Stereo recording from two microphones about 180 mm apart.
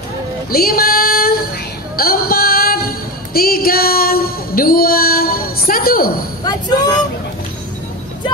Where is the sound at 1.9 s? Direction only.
55° left (ahead or behind).